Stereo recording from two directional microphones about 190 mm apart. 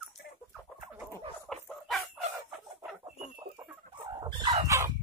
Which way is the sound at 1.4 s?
Centre (ahead or behind).